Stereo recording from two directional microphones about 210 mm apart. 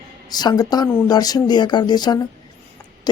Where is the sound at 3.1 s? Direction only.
20° left (ahead or behind).